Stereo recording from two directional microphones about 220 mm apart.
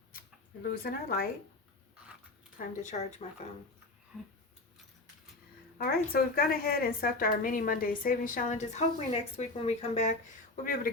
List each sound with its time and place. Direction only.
0.7 s speech: 45° left (ahead or behind)
2.6 s a woman's voice: 30° left (ahead or behind)
4.1 s a sound: 5° right (ahead or behind)
5.7 s a woman's voice: 45° left (ahead or behind)